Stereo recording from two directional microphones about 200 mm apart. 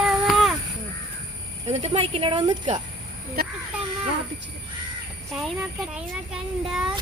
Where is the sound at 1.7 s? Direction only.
30° right (ahead or behind).